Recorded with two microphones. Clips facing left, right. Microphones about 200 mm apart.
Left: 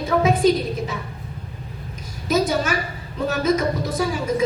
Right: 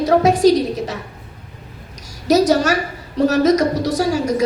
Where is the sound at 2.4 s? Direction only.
80° right.